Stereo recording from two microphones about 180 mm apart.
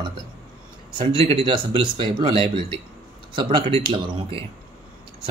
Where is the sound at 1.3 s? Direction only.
30° right (ahead or behind).